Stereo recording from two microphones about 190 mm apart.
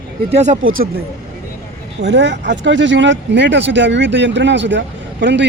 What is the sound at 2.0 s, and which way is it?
Speech, 65° right (ahead or behind).